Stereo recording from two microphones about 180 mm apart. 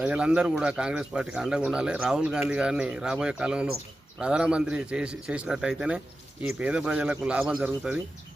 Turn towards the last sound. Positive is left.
turn(degrees=-5)  # may be behind; listen again after turning